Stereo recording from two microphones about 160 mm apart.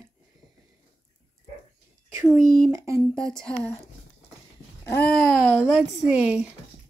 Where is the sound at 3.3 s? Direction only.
5° left (ahead or behind).